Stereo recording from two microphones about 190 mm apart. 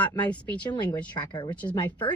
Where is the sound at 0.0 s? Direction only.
10° left (ahead or behind).